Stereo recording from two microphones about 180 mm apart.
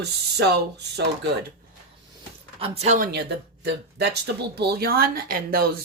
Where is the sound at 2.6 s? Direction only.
35° right (ahead or behind).